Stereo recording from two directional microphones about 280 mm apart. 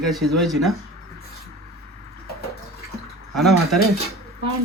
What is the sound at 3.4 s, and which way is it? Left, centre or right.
Speech, centre.